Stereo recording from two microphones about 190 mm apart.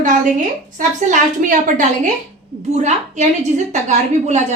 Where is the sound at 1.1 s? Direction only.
45° right (ahead or behind).